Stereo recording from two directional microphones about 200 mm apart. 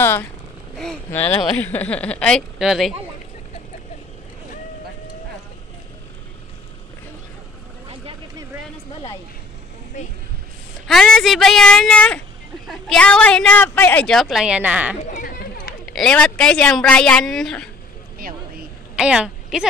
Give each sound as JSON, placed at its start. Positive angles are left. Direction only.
{"t": 0.7, "sound": "speech", "side_deg": 5}
{"t": 9.9, "sound": "a sound", "side_deg": 40}
{"t": 10.9, "sound": "speech", "side_deg": 0}
{"t": 15.0, "sound": "chatter", "side_deg": 45}
{"t": 15.8, "sound": "speech", "side_deg": 0}
{"t": 18.9, "sound": "a woman's voice", "side_deg": -5}